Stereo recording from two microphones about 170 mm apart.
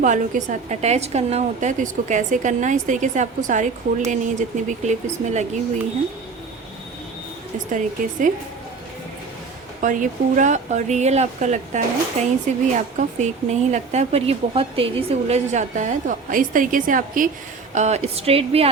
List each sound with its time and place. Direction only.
0.0 s a woman's voice: 45° right (ahead or behind)
7.7 s a woman's voice: 50° right (ahead or behind)
9.8 s a woman's voice: 50° right (ahead or behind)
17.7 s a woman's voice: 40° right (ahead or behind)